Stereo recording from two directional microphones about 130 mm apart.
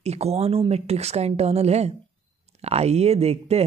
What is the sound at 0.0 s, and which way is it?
Speech, 55° right (ahead or behind).